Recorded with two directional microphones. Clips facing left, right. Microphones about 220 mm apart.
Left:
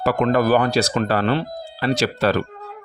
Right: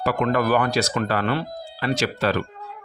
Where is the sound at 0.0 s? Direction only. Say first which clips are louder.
Left 3 dB; 40° left (ahead or behind).